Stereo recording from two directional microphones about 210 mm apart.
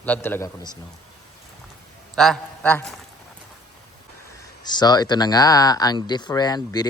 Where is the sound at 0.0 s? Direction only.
10° left (ahead or behind).